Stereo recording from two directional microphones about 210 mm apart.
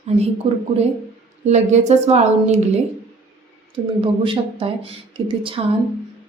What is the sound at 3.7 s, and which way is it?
Speech, 25° right (ahead or behind).